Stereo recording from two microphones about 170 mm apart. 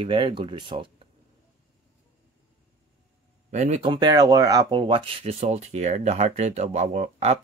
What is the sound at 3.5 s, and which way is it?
Speech, 40° right (ahead or behind).